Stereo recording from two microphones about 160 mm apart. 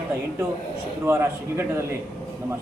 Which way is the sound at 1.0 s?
15° right (ahead or behind).